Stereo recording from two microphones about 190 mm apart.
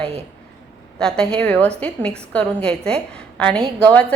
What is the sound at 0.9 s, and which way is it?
A woman's voice, 5° left (ahead or behind).